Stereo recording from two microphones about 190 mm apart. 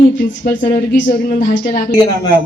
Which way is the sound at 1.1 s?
60° left (ahead or behind).